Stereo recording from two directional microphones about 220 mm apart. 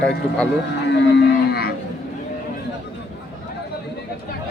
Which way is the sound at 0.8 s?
50° left (ahead or behind).